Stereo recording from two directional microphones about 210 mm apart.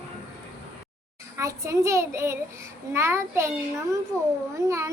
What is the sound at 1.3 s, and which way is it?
A child's voice, 15° right (ahead or behind).